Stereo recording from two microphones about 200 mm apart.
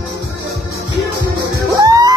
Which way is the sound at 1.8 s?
20° right (ahead or behind).